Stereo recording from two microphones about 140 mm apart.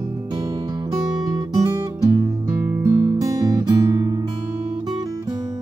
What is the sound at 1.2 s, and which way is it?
Music, 25° right (ahead or behind).